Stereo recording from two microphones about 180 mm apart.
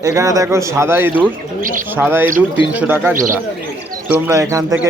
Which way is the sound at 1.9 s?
10° right (ahead or behind).